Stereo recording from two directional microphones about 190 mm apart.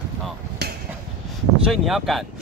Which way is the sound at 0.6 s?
60° right (ahead or behind).